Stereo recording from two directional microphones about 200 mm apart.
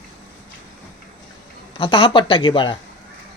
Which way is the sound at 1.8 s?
25° left (ahead or behind).